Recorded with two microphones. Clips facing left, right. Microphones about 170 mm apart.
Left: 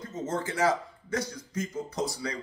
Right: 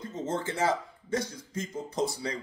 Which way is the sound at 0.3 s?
25° right (ahead or behind).